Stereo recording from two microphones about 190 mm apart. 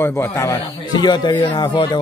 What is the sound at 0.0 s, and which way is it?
A man's voice, 10° left (ahead or behind).